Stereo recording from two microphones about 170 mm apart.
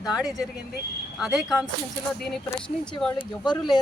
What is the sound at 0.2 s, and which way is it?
Speech, 5° right (ahead or behind).